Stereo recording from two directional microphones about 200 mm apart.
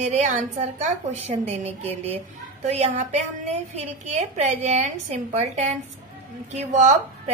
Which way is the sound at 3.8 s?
35° right (ahead or behind).